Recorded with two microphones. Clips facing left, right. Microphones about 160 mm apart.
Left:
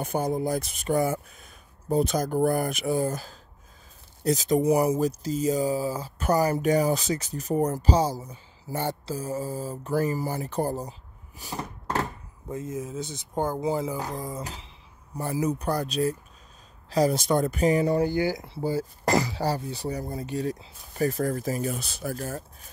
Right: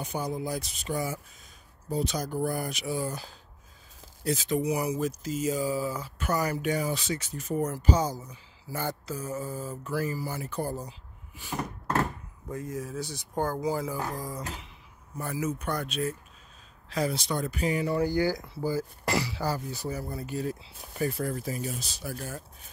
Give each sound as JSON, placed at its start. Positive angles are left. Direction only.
{"t": 0.0, "sound": "speech", "side_deg": 50}
{"t": 12.0, "sound": "speech", "side_deg": 20}
{"t": 18.0, "sound": "speech", "side_deg": 20}
{"t": 19.0, "sound": "speech", "side_deg": 40}
{"t": 22.1, "sound": "speech", "side_deg": 40}